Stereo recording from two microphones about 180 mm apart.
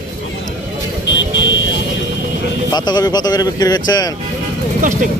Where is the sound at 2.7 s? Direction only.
25° left (ahead or behind).